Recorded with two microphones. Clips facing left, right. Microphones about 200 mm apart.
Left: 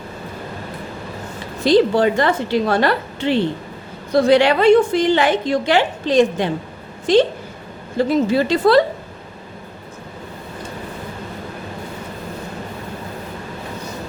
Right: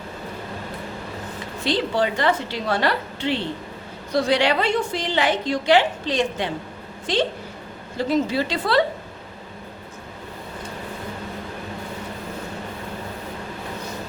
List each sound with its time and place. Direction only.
1.6 s a woman's voice: 45° left (ahead or behind)
7.9 s a woman's voice: 50° left (ahead or behind)